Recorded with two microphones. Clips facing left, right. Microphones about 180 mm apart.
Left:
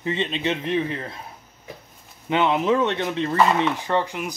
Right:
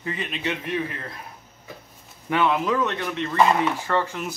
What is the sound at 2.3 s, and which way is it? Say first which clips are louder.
A man's voice: left 2 dB; 20° left (ahead or behind).